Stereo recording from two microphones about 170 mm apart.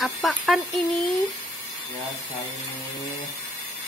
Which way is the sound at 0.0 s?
Centre (ahead or behind).